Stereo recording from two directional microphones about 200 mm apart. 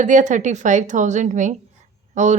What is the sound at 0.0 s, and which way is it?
Speech, 40° right (ahead or behind).